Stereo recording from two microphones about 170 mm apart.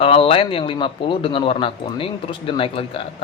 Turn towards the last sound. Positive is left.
turn(degrees=35)  # may be behind; listen again after turning